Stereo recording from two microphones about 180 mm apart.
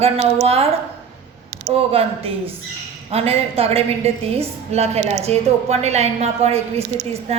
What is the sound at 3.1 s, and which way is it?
A woman's voice, 35° right (ahead or behind).